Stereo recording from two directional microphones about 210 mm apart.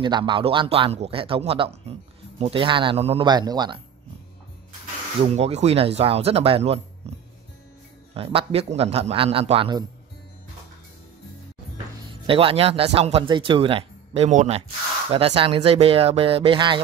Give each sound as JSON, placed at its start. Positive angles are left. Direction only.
{"t": 0.0, "sound": "speech", "side_deg": -20}
{"t": 5.2, "sound": "speech", "side_deg": -30}
{"t": 7.0, "sound": "music", "side_deg": -30}
{"t": 8.1, "sound": "speech", "side_deg": -25}
{"t": 12.3, "sound": "speech", "side_deg": -25}